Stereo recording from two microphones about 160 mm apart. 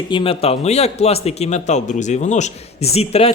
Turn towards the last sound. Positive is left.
turn(degrees=40)  # may be behind; listen again after turning